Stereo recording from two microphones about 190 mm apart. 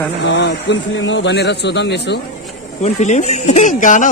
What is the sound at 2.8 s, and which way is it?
Speech, 35° left (ahead or behind).